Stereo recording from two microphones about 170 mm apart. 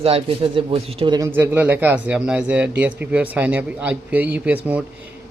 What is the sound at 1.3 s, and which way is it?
A man's voice, 10° right (ahead or behind).